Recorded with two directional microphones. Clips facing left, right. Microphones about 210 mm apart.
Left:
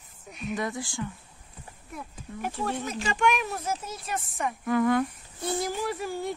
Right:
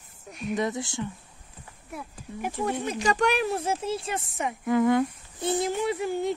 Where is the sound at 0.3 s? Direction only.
Centre (ahead or behind).